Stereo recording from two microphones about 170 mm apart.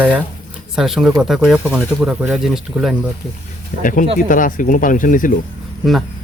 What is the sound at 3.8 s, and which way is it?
Speech, 50° left (ahead or behind).